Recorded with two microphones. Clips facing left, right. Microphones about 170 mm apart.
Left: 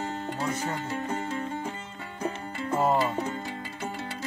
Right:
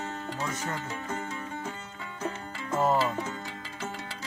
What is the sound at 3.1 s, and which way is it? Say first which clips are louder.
Music: left 4 dB; 30° left (ahead or behind).